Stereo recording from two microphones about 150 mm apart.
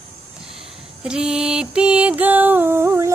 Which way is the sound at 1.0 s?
5° right (ahead or behind).